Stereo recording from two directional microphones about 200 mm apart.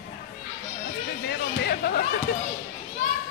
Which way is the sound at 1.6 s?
50° left (ahead or behind).